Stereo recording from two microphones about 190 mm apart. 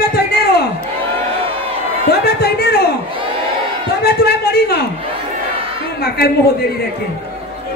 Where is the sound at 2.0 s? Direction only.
55° left (ahead or behind).